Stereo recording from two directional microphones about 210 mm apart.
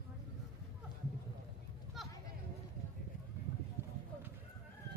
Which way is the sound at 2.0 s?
Centre (ahead or behind).